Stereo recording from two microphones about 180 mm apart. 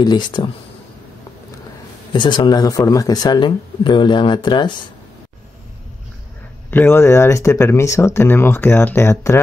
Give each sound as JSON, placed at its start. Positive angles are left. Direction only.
{"t": 0.0, "sound": "speech", "side_deg": 25}
{"t": 2.1, "sound": "speech", "side_deg": 25}
{"t": 6.7, "sound": "speech", "side_deg": 10}